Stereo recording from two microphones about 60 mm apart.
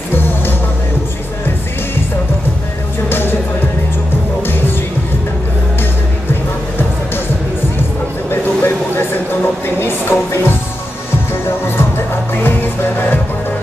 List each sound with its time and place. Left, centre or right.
3.1 s music: left
8.3 s a sound: left
12.4 s music: left